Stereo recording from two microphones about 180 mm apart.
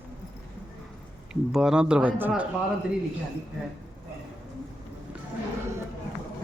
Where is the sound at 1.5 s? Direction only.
5° right (ahead or behind).